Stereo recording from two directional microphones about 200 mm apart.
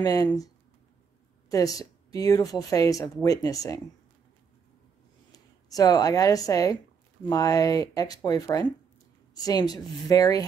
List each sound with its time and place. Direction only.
0.0 s a woman's voice: 20° left (ahead or behind)
1.5 s speech: 15° left (ahead or behind)
5.3 s a woman's voice: 20° left (ahead or behind)